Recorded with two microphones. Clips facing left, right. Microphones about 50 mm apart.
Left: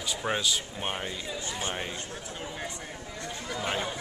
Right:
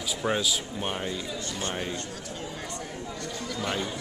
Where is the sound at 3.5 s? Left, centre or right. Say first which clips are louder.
Even; centre.